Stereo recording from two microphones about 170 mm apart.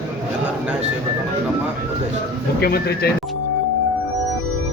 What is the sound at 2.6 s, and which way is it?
Speech, 65° left (ahead or behind).